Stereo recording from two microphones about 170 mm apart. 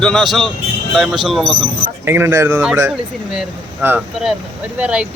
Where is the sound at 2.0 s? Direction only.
15° right (ahead or behind).